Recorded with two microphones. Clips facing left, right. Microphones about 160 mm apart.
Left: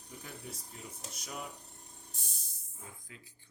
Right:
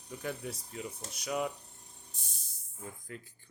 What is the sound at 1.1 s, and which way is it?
Speech, 80° right.